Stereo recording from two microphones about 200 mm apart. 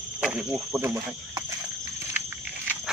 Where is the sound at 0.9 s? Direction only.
15° right (ahead or behind).